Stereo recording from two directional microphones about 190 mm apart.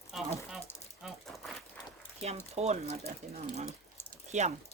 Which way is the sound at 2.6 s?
35° right (ahead or behind).